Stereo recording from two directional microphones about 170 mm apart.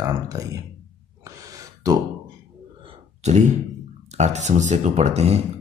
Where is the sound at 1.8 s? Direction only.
20° right (ahead or behind).